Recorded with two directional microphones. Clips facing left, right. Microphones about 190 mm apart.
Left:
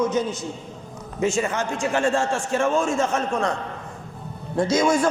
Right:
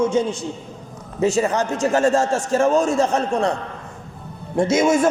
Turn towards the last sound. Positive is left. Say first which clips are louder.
# right 3 dB
turn(degrees=-25)  # may be behind; listen again after turning